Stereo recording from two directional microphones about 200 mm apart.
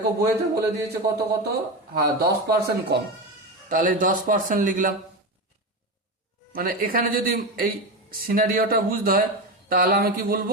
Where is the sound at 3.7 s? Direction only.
40° right (ahead or behind).